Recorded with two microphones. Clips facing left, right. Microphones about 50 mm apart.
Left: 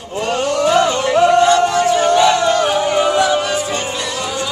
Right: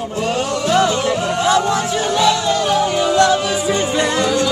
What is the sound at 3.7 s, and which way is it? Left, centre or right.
Music, right.